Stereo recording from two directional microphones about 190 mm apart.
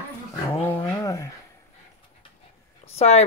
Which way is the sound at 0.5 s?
10° left (ahead or behind).